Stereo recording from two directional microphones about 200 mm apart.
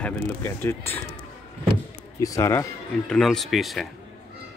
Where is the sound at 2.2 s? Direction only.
15° left (ahead or behind).